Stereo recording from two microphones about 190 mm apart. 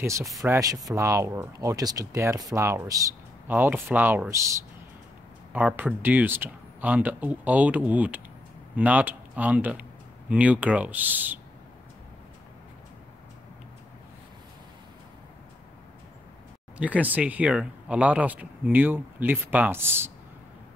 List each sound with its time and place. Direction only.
0.0 s speech: 15° right (ahead or behind)
16.7 s speech: 5° right (ahead or behind)